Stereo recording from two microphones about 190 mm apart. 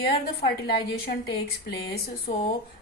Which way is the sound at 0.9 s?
55° left (ahead or behind).